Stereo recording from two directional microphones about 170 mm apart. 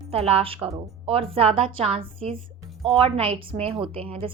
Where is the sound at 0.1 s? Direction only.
35° right (ahead or behind).